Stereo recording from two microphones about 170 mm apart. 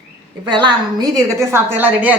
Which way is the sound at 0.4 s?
25° right (ahead or behind).